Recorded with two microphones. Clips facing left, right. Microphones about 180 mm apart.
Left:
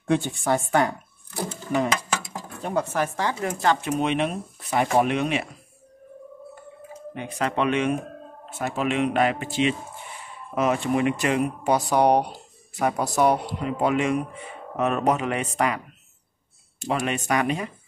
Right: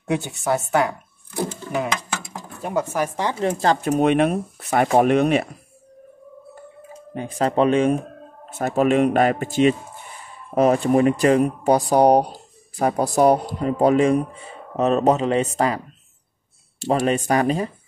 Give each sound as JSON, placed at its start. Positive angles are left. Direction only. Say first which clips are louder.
{"t": 0.0, "sound": "speech", "louder": "even", "side_deg": -10}
{"t": 2.6, "sound": "speech", "louder": "right 2 dB", "side_deg": -10}
{"t": 3.8, "sound": "speech", "louder": "right 6 dB", "side_deg": -45}
{"t": 7.2, "sound": "speech", "louder": "right 6 dB", "side_deg": -30}
{"t": 16.8, "sound": "speech", "louder": "right 6 dB", "side_deg": -30}